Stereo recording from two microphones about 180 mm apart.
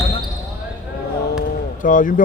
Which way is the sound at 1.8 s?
45° left (ahead or behind).